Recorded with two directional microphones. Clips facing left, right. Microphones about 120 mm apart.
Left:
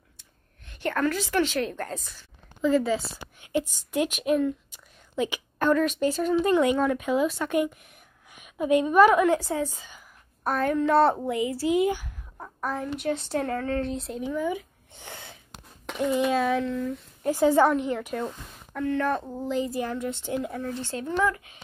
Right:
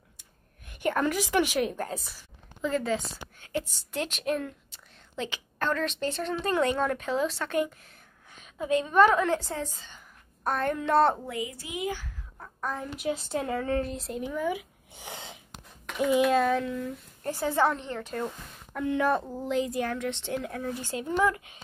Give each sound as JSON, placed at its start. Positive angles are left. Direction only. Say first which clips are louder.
{"t": 0.7, "sound": "a woman's voice", "louder": "left 1 dB", "side_deg": -10}
{"t": 2.6, "sound": "a woman's voice", "louder": "left 5 dB", "side_deg": 5}
{"t": 11.5, "sound": "speech", "louder": "left 11 dB", "side_deg": 40}
{"t": 11.9, "sound": "a woman's voice", "louder": "left 5 dB", "side_deg": 15}
{"t": 16.0, "sound": "speech", "louder": "right 1 dB", "side_deg": -5}
{"t": 17.2, "sound": "a woman's voice", "louder": "left 6 dB", "side_deg": 15}
{"t": 18.2, "sound": "a woman's voice", "louder": "left 1 dB", "side_deg": -5}